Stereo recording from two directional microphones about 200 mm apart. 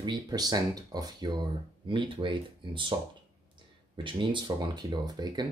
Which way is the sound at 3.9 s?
25° right (ahead or behind).